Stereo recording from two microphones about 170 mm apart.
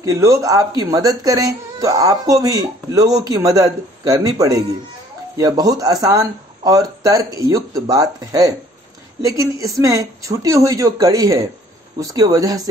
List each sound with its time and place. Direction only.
0.0 s speech: 20° right (ahead or behind)